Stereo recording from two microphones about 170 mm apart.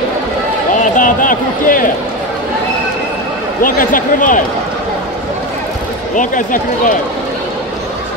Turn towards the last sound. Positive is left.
turn(degrees=50)  # may be behind; listen again after turning